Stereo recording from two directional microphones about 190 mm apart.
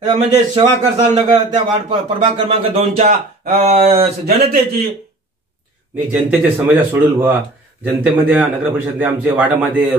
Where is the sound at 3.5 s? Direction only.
35° right (ahead or behind).